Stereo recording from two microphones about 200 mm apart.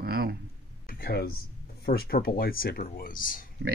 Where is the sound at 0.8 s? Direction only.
45° left (ahead or behind).